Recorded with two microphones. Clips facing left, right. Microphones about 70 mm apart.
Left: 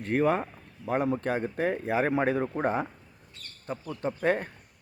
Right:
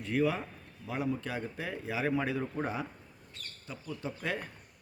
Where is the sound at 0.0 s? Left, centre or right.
Left.